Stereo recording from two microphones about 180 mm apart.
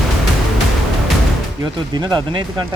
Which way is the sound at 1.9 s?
25° right (ahead or behind).